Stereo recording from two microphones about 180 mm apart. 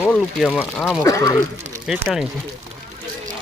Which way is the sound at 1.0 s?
20° left (ahead or behind).